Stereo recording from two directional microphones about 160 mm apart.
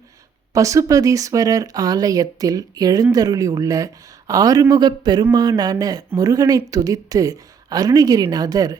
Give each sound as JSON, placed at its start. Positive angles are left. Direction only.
{"t": 0.5, "sound": "speech", "side_deg": -20}